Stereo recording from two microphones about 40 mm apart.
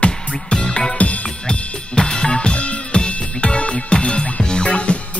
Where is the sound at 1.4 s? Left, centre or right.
Left.